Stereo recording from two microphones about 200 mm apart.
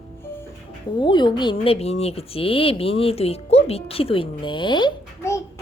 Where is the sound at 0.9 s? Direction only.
20° left (ahead or behind).